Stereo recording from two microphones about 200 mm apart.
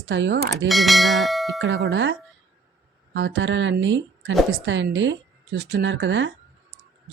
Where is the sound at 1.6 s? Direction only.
65° right (ahead or behind).